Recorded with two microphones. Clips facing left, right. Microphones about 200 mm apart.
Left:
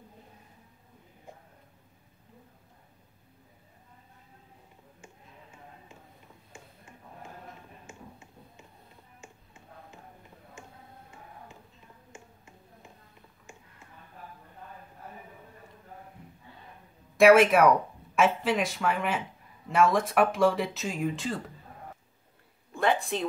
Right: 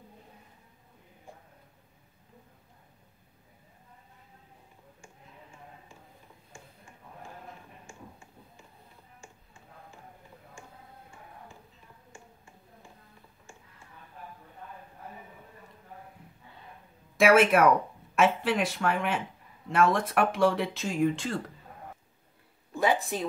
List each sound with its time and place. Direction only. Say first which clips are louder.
7.8 s finger snapping: left 1 dB; 20° left (ahead or behind)
9.2 s a sound: left 3 dB; 20° left (ahead or behind)
12.1 s finger snapping: left 1 dB; 20° left (ahead or behind)
17.2 s speech: left 2 dB; centre (ahead or behind)
22.8 s speech: even; 5° right (ahead or behind)